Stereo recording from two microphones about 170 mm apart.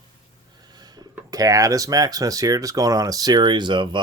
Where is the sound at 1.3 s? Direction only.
20° right (ahead or behind).